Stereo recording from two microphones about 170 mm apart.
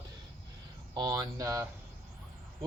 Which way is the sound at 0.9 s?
20° right (ahead or behind).